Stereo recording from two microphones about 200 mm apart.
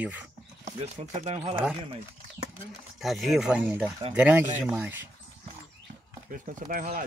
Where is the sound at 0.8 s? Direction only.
35° right (ahead or behind).